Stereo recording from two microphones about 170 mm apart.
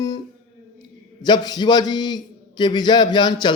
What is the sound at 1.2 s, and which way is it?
A man's voice, 25° left (ahead or behind).